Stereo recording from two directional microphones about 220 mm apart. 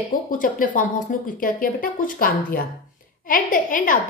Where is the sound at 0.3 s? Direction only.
35° left (ahead or behind).